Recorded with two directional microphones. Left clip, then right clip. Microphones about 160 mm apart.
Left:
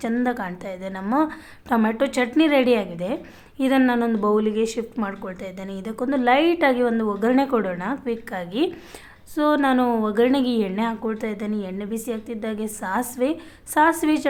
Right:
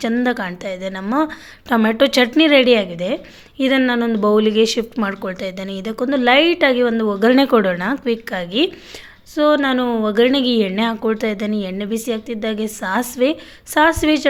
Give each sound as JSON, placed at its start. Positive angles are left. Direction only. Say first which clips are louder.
{"t": 0.0, "sound": "speech", "louder": "right 5 dB", "side_deg": -20}
{"t": 4.4, "sound": "speech", "louder": "right 7 dB", "side_deg": -25}